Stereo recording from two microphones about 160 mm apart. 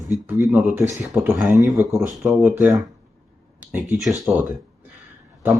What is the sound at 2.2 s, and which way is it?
Speech, 5° right (ahead or behind).